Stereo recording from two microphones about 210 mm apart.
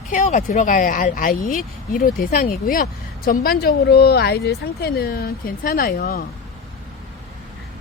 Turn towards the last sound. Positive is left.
turn(degrees=45)  # may be behind; listen again after turning